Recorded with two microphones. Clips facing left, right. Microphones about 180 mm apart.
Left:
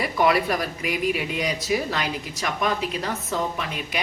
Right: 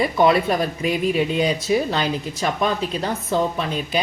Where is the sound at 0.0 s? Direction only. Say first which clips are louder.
Right 4 dB; 25° right (ahead or behind).